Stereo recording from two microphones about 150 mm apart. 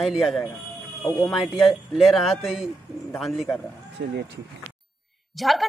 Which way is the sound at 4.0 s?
75° right (ahead or behind).